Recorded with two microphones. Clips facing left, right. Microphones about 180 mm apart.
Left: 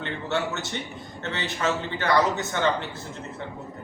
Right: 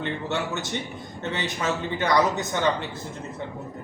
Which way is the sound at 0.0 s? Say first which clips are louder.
Even; 15° right (ahead or behind).